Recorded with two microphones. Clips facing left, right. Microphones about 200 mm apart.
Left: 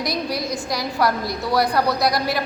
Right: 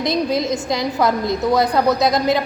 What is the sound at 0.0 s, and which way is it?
A woman's voice, 20° right (ahead or behind).